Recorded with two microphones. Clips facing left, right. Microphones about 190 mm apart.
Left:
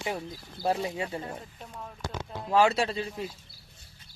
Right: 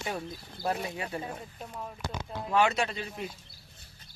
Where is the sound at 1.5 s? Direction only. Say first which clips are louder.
Right 2 dB; 5° right (ahead or behind).